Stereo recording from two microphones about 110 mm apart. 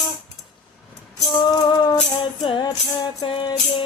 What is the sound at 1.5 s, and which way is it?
Music, 35° left (ahead or behind).